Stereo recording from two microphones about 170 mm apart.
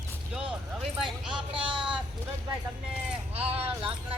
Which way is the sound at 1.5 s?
30° right (ahead or behind).